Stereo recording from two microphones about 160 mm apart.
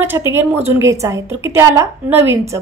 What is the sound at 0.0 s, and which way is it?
A woman's voice, 15° right (ahead or behind).